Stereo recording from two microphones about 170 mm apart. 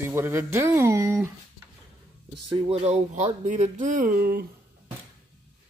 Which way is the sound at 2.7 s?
40° right (ahead or behind).